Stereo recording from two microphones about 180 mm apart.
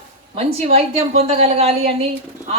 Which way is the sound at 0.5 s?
35° right (ahead or behind).